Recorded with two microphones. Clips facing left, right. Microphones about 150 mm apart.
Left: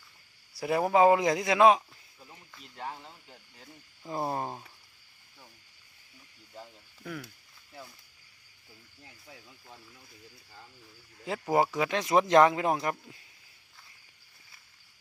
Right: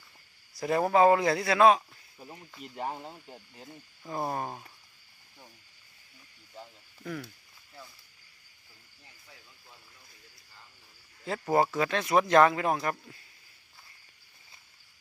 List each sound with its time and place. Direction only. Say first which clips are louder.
0.5 s a man's voice: even; 10° left (ahead or behind)
2.1 s snake: right 6 dB; 30° right (ahead or behind)
2.5 s speech: right 9 dB; 15° right (ahead or behind)
2.8 s speech: right 4 dB; 35° right (ahead or behind)
4.3 s speech: left 1 dB; 20° left (ahead or behind)
6.5 s speech: even; centre (ahead or behind)
11.3 s speech: even; 10° left (ahead or behind)